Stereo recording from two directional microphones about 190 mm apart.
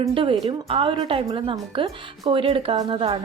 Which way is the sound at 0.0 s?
30° right (ahead or behind).